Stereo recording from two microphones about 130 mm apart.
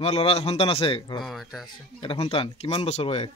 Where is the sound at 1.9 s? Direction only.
45° left (ahead or behind).